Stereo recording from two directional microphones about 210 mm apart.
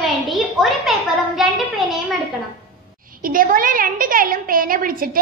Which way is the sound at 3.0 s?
40° right (ahead or behind).